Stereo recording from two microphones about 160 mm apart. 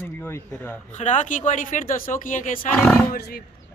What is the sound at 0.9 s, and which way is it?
Speech, 50° left (ahead or behind).